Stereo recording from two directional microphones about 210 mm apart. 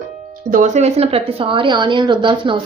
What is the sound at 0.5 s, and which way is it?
A woman's voice, 35° right (ahead or behind).